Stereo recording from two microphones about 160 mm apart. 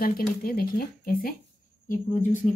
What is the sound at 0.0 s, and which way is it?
Speech, 70° left (ahead or behind).